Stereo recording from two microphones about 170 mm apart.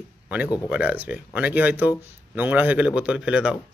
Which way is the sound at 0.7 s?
10° right (ahead or behind).